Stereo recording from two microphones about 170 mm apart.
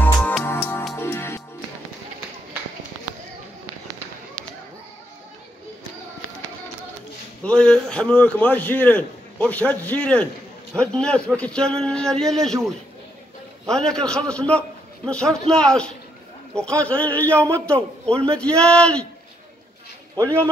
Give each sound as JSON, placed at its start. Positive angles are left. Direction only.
{"t": 0.0, "sound": "music", "side_deg": 10}
{"t": 7.4, "sound": "a man's voice", "side_deg": 5}
{"t": 13.7, "sound": "a man's voice", "side_deg": 5}